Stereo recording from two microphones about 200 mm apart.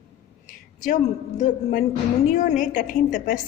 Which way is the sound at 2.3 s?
40° left (ahead or behind).